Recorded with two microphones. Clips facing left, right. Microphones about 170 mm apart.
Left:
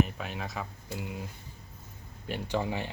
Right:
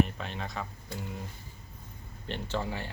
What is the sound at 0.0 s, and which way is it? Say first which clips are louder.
Speech: even; 5° left (ahead or behind).